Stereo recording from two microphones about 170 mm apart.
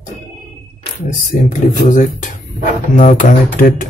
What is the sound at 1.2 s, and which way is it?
Speech, 50° left (ahead or behind).